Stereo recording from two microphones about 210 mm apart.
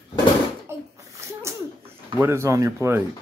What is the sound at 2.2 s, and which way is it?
Speech, 10° right (ahead or behind).